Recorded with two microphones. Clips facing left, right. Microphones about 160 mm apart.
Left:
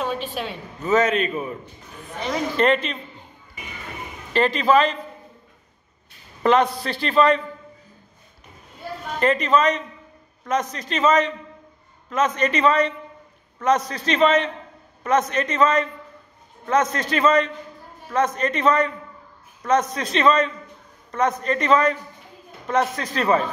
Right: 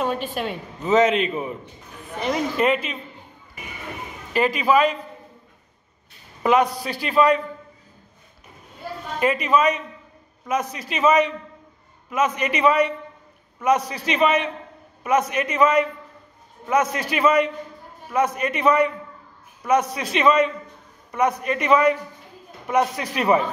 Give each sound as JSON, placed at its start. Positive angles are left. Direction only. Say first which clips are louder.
{"t": 0.1, "sound": "a woman's voice", "louder": "right 1 dB", "side_deg": -50}
{"t": 0.7, "sound": "a man's voice", "louder": "right 2 dB", "side_deg": -20}
{"t": 2.5, "sound": "a man's voice", "louder": "left 1 dB", "side_deg": -5}
{"t": 4.3, "sound": "a man's voice", "louder": "left 1 dB", "side_deg": -10}
{"t": 6.4, "sound": "a man's voice", "louder": "left 1 dB", "side_deg": -10}
{"t": 9.2, "sound": "a man's voice", "louder": "left 1 dB", "side_deg": -10}